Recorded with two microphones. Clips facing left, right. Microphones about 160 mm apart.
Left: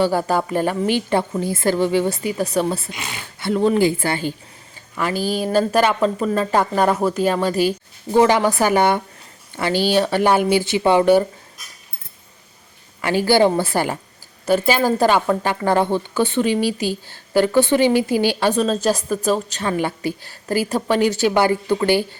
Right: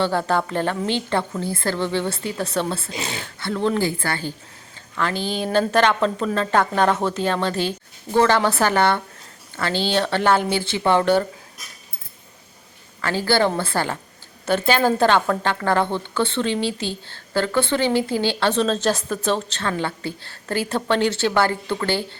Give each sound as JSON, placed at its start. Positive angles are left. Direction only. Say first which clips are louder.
{"t": 0.0, "sound": "a woman's voice", "louder": "left 2 dB", "side_deg": 10}
{"t": 13.0, "sound": "a woman's voice", "louder": "left 4 dB", "side_deg": 15}